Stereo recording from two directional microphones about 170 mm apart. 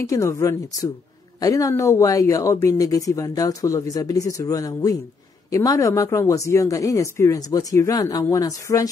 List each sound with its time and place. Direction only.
0.0 s speech: 20° left (ahead or behind)